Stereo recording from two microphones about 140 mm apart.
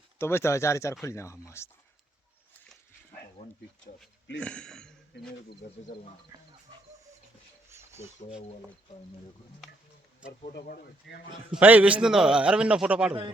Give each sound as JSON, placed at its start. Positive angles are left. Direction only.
{"t": 0.2, "sound": "speech", "side_deg": 15}
{"t": 4.0, "sound": "speech", "side_deg": 5}
{"t": 6.3, "sound": "music", "side_deg": -20}
{"t": 7.7, "sound": "a sound", "side_deg": -20}
{"t": 11.5, "sound": "a man's voice", "side_deg": -10}